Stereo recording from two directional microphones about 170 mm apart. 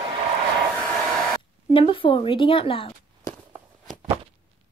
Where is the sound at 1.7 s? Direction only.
30° left (ahead or behind).